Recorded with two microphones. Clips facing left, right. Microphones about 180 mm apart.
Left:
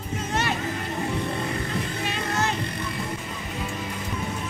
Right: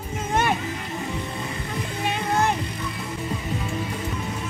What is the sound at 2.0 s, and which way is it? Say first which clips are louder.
Music: right 7 dB; 55° right (ahead or behind).